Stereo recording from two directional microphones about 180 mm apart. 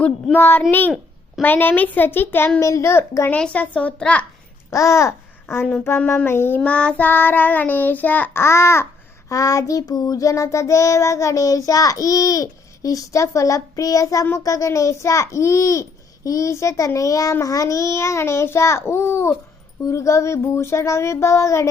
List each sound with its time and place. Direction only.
0.0 s child singing: 10° left (ahead or behind)
4.7 s speech: 15° left (ahead or behind)
5.8 s child singing: 15° left (ahead or behind)